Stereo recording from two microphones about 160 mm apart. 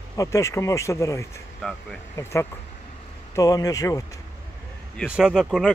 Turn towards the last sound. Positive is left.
turn(degrees=-5)  # may be behind; listen again after turning